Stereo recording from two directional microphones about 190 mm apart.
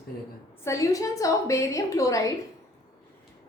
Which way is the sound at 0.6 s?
15° left (ahead or behind).